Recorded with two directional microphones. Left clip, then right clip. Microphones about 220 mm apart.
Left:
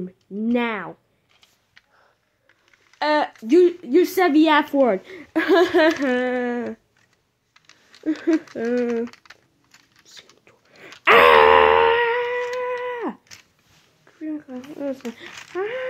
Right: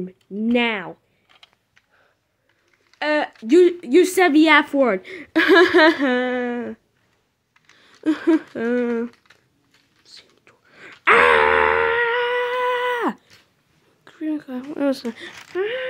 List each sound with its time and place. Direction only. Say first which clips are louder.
0.0 s a woman's voice: right 2 dB; 5° right (ahead or behind)
3.0 s a woman's voice: left 1 dB; centre (ahead or behind)
8.0 s speech: right 3 dB; 25° right (ahead or behind)
9.1 s typing: left 6 dB; 50° left (ahead or behind)
10.0 s whispering: right 1 dB; centre (ahead or behind)
11.1 s wail: left 2 dB; centre (ahead or behind)
12.2 s humming: right 3 dB; 20° right (ahead or behind)
12.4 s a sound: right 5 dB; 40° right (ahead or behind)
14.0 s speech: right 5 dB; 40° right (ahead or behind)
15.2 s a woman's voice: right 2 dB; 10° right (ahead or behind)